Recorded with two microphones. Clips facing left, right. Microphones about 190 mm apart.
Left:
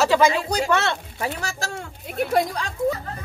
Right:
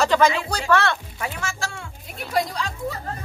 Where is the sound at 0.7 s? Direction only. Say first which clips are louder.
Right 2 dB; 25° left (ahead or behind); by 1.9 s 40° left (ahead or behind).